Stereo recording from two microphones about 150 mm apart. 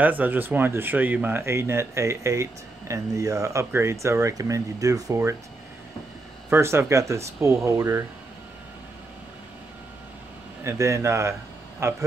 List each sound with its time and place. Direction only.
0.0 s speech: 10° right (ahead or behind)
6.5 s speech: 15° right (ahead or behind)
10.6 s speech: 20° right (ahead or behind)